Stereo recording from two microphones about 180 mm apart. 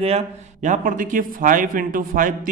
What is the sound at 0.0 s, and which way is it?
A man's voice, 40° right (ahead or behind).